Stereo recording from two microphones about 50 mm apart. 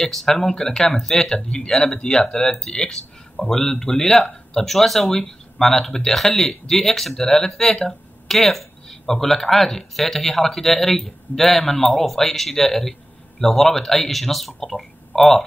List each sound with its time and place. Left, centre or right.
0.0 s speech: centre